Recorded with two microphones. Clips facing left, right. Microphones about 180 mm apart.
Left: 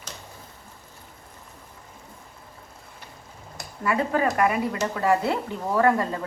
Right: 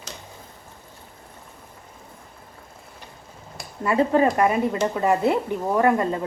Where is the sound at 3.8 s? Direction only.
25° right (ahead or behind).